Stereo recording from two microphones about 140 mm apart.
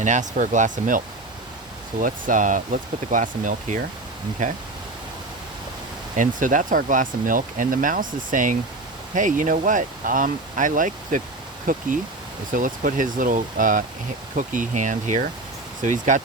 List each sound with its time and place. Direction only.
0.0 s speech: 60° right (ahead or behind)
6.1 s speech: 70° right (ahead or behind)